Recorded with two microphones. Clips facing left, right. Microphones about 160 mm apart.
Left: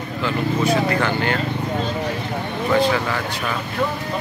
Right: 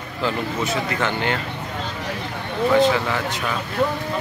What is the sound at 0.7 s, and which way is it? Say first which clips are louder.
Speech: left 5 dB; 20° right (ahead or behind).